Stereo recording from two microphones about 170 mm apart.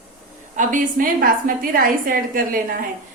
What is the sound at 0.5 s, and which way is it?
A woman's voice, 50° right (ahead or behind).